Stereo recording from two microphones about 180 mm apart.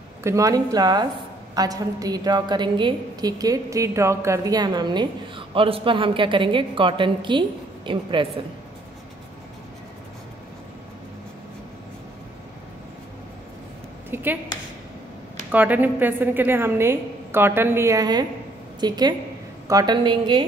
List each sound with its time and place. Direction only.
0.2 s a woman's voice: 15° right (ahead or behind)
14.1 s a sound: 10° right (ahead or behind)
15.5 s a woman's voice: 10° right (ahead or behind); by 20.4 s 25° right (ahead or behind)